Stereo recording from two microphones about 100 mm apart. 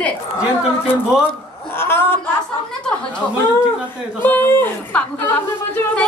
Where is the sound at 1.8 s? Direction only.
25° left (ahead or behind).